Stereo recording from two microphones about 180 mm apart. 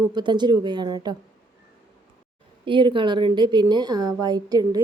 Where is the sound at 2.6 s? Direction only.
25° right (ahead or behind).